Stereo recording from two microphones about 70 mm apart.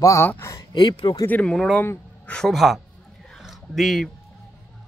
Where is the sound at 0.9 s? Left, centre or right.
Left.